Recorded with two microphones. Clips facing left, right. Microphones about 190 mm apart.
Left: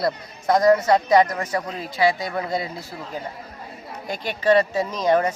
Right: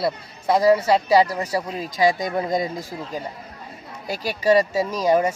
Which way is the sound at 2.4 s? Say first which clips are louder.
Right 3 dB; 15° right (ahead or behind).